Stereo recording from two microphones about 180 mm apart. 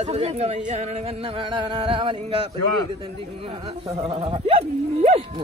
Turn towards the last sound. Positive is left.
turn(degrees=-35)  # may be behind; listen again after turning